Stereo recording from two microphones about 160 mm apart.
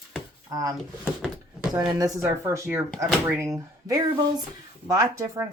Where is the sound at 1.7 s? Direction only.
20° right (ahead or behind).